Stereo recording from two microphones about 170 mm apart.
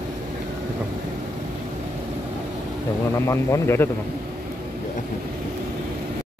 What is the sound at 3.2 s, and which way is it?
Speech, 15° left (ahead or behind).